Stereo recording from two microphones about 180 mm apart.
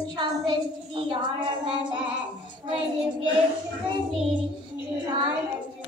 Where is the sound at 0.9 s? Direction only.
25° right (ahead or behind).